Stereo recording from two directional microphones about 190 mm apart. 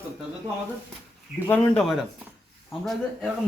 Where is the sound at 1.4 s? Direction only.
5° left (ahead or behind).